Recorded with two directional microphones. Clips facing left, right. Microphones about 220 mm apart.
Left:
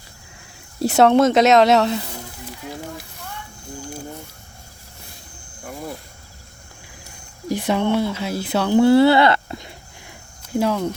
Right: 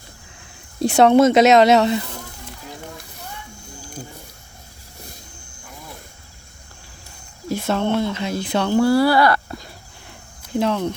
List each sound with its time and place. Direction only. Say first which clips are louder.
0.8 s speech: right 1 dB; 5° left (ahead or behind)
7.4 s speech: left 1 dB; 15° left (ahead or behind)
8.8 s a sound: left 3 dB; 25° left (ahead or behind)
10.5 s speech: even; 10° left (ahead or behind)